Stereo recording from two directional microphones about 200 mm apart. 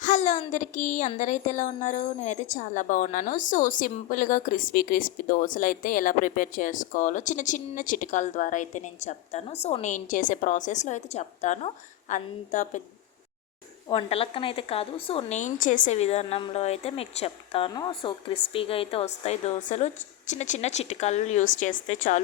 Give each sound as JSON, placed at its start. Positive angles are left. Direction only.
{"t": 0.0, "sound": "speech", "side_deg": 35}
{"t": 13.8, "sound": "speech", "side_deg": 30}